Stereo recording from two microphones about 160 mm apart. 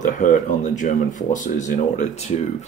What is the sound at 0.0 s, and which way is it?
Speech, 50° left (ahead or behind).